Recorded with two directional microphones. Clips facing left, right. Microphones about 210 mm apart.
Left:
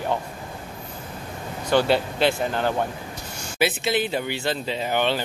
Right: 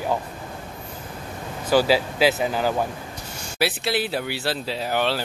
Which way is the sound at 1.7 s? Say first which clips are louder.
Right 1 dB; 5° right (ahead or behind).